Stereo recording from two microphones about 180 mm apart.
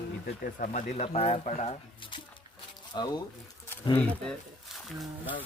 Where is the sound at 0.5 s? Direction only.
45° left (ahead or behind); by 3.2 s 25° left (ahead or behind).